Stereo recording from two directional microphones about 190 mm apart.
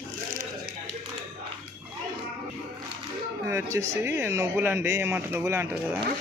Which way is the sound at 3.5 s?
15° right (ahead or behind).